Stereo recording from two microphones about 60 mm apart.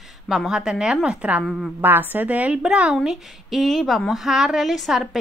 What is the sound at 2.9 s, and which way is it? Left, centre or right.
A woman's voice, centre.